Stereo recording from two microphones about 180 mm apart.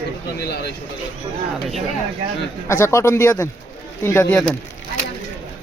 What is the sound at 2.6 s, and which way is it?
Speech, 15° left (ahead or behind).